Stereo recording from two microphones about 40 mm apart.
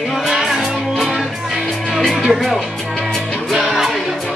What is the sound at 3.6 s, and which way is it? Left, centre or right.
Music, centre.